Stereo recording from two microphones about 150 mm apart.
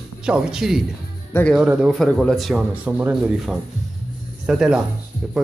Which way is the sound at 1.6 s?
5° right (ahead or behind).